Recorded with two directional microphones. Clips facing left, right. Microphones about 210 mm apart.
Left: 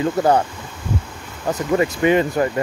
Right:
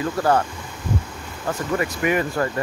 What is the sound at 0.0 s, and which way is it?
Speech, 20° left (ahead or behind).